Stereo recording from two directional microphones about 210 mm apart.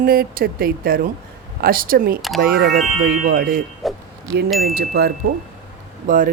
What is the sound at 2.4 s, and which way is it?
Speech, 50° right (ahead or behind).